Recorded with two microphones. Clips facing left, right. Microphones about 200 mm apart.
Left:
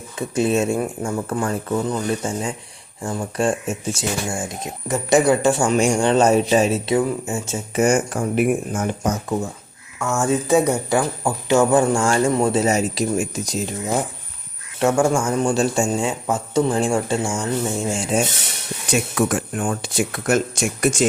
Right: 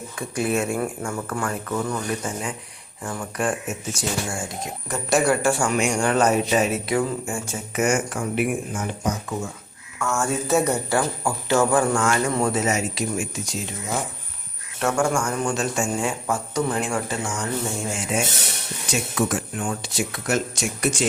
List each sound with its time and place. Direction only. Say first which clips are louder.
0.2 s speech: left 5 dB; 25° left (ahead or behind); by 9.5 s 45° left (ahead or behind)
10.0 s speech: left 4 dB; 20° left (ahead or behind); by 13.7 s 40° left (ahead or behind)
14.8 s speech: left 4 dB; 25° left (ahead or behind)
19.1 s speech: left 3 dB; 55° left (ahead or behind)